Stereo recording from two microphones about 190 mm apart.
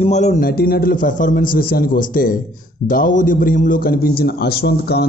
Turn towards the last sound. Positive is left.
turn(degrees=55)  # may be behind; listen again after turning